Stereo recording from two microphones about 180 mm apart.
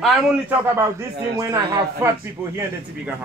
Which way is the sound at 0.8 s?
15° right (ahead or behind).